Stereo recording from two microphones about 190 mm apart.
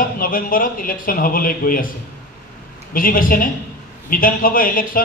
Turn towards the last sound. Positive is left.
turn(degrees=45)  # may be behind; listen again after turning